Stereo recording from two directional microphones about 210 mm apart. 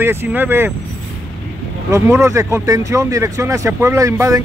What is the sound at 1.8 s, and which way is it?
Speech, 15° right (ahead or behind).